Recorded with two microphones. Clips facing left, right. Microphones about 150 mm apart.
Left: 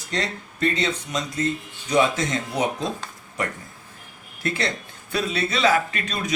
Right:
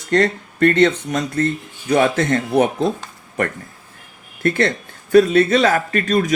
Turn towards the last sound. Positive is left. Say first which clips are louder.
# right 11 dB
turn(degrees=-45)  # may be behind; listen again after turning